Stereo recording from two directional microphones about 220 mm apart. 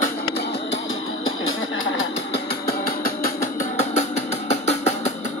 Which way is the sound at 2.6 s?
45° left (ahead or behind).